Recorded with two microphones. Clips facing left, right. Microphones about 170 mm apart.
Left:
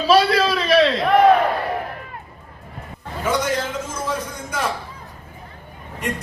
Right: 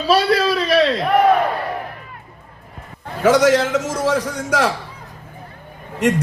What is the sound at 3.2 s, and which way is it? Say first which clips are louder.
A man's voice: right 9 dB; 75° right (ahead or behind).